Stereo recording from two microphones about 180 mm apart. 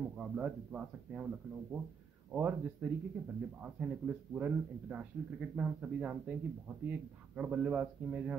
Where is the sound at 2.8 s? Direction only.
10° right (ahead or behind).